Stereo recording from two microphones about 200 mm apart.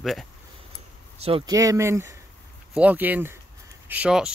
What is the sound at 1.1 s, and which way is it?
Speech, 25° right (ahead or behind).